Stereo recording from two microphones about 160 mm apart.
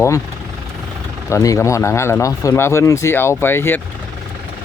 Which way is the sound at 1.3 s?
20° left (ahead or behind).